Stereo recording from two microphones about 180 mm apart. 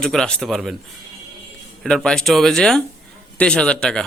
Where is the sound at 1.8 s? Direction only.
5° left (ahead or behind).